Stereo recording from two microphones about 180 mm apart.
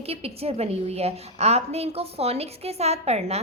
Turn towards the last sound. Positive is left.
turn(degrees=-35)  # may be behind; listen again after turning